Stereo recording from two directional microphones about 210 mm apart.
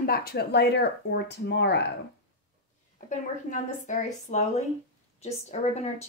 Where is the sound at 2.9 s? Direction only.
35° left (ahead or behind).